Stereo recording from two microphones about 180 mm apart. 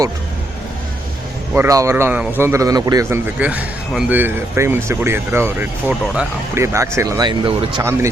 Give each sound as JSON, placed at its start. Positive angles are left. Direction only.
{"t": 1.5, "sound": "a man's voice", "side_deg": -15}
{"t": 7.8, "sound": "a man's voice", "side_deg": -15}